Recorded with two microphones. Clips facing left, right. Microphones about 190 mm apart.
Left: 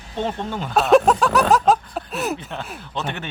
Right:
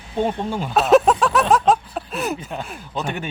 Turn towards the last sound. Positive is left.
turn(degrees=-10)  # may be behind; listen again after turning